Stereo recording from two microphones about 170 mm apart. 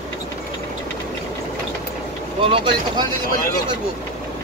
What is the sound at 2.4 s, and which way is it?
Speech, 30° right (ahead or behind).